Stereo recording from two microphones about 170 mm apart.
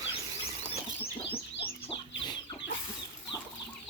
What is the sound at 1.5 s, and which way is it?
Chicken, 90° left.